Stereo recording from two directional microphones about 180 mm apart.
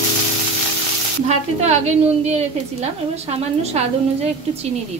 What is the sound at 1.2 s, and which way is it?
A woman's voice, 35° right (ahead or behind).